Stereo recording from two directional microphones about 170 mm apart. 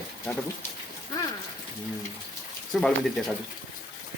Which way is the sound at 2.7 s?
5° left (ahead or behind).